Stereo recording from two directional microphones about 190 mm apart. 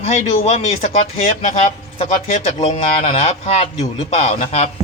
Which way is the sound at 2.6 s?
30° left (ahead or behind).